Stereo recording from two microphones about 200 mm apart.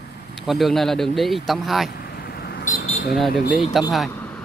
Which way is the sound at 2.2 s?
50° left (ahead or behind).